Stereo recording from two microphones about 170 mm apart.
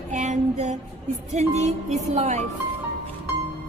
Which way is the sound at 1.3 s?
40° right (ahead or behind).